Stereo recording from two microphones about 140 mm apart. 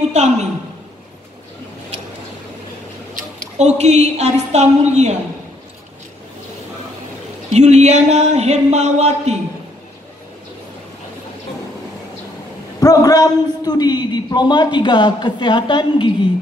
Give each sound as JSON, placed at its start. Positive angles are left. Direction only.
{"t": 0.1, "sound": "speech", "side_deg": -55}
{"t": 3.5, "sound": "speech", "side_deg": -55}
{"t": 7.4, "sound": "speech", "side_deg": -55}
{"t": 12.8, "sound": "a man's voice", "side_deg": 25}